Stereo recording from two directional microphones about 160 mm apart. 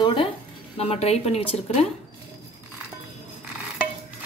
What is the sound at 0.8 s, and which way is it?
Speech, 40° left (ahead or behind).